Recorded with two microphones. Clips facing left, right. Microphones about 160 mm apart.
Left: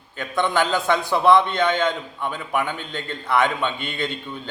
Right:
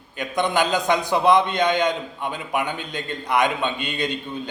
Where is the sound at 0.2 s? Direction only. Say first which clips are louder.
Even; 15° right (ahead or behind).